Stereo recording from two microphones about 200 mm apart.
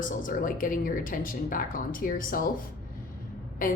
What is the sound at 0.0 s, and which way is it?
A woman's voice, 40° left (ahead or behind).